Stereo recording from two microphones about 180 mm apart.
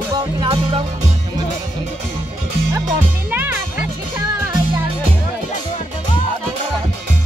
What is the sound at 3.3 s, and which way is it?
Music, 10° right (ahead or behind).